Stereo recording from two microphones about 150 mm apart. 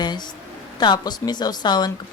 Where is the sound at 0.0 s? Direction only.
30° left (ahead or behind).